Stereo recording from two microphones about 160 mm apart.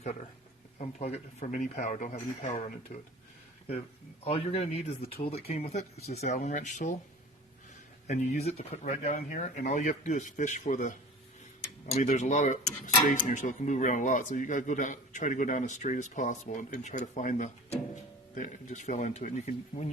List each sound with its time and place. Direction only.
0.8 s speech: 40° left (ahead or behind)
4.2 s speech: 40° left (ahead or behind)
8.0 s speech: 50° left (ahead or behind)
11.9 s speech: 45° left (ahead or behind)